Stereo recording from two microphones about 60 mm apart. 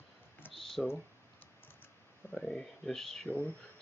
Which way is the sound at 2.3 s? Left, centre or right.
Centre.